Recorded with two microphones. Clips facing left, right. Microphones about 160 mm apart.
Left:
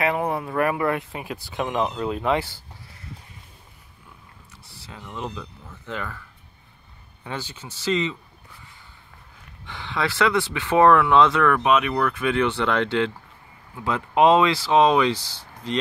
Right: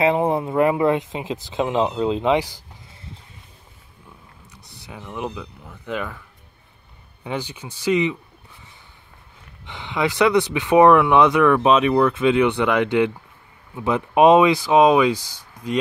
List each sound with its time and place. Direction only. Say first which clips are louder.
0.0 s speech: right 5 dB; 25° right (ahead or behind)
4.5 s speech: right 3 dB; 20° right (ahead or behind)
7.2 s speech: right 5 dB; 15° right (ahead or behind)
9.7 s speech: right 4 dB; 20° right (ahead or behind)
11.6 s speech: right 5 dB; 30° right (ahead or behind)